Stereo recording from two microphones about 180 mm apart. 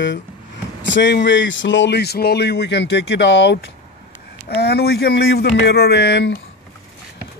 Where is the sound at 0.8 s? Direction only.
85° left.